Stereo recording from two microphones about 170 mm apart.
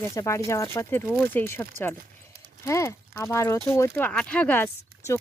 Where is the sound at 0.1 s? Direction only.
20° left (ahead or behind).